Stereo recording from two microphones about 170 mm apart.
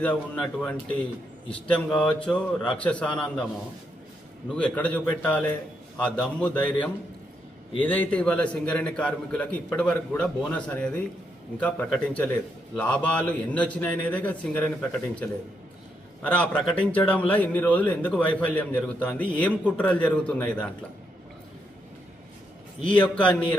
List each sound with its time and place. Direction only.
0.0 s a man's voice: 10° left (ahead or behind)
4.4 s a man's voice: 5° left (ahead or behind)
16.2 s a man's voice: 10° left (ahead or behind)
22.8 s a man's voice: 30° left (ahead or behind)